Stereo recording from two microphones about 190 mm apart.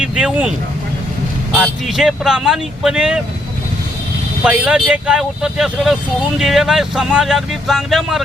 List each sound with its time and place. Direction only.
0.2 s speech: 5° right (ahead or behind)
1.5 s speech: centre (ahead or behind)
4.4 s speech: 5° right (ahead or behind)